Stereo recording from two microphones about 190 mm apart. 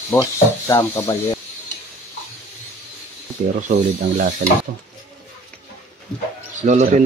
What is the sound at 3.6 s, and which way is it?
Speech, 40° right (ahead or behind).